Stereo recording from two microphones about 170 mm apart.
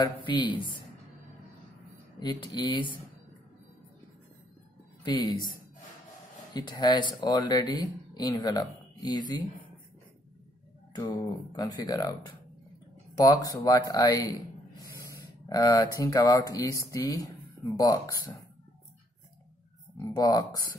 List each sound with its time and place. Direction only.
0.4 s speech: 25° left (ahead or behind)
2.1 s speech: 25° left (ahead or behind)
5.0 s speech: 25° left (ahead or behind)
6.5 s speech: 25° left (ahead or behind)
10.9 s speech: 20° left (ahead or behind)
13.2 s speech: 20° left (ahead or behind)
20.0 s speech: 20° left (ahead or behind)